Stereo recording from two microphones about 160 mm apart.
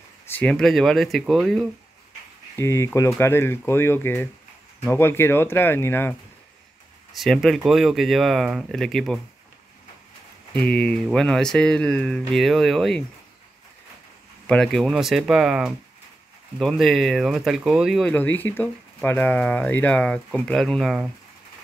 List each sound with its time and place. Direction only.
0.3 s speech: 5° left (ahead or behind)
2.5 s speech: 15° left (ahead or behind)
7.2 s speech: centre (ahead or behind)
10.5 s speech: 5° left (ahead or behind)
14.5 s speech: 5° left (ahead or behind)
18.1 s speech: 10° left (ahead or behind)